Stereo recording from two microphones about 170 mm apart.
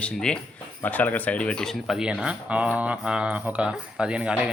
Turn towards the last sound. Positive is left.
turn(degrees=-5)  # may be behind; listen again after turning